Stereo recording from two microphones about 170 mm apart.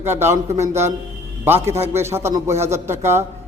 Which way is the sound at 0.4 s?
40° right (ahead or behind).